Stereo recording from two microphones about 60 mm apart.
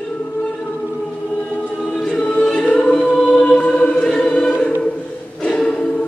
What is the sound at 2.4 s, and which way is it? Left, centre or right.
Choir, centre.